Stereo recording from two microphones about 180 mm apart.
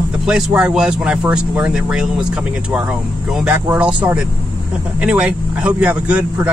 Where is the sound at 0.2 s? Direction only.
5° right (ahead or behind).